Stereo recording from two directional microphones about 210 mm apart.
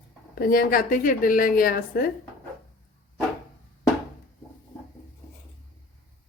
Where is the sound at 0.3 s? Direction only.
45° left (ahead or behind).